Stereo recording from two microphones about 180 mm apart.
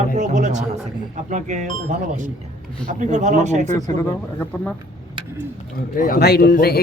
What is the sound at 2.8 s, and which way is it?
Speech, 45° right (ahead or behind).